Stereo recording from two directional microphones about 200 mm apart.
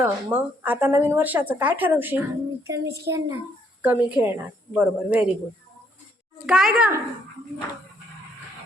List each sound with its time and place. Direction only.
0.0 s a woman's voice: 5° right (ahead or behind)
6.4 s a child's voice: 5° right (ahead or behind)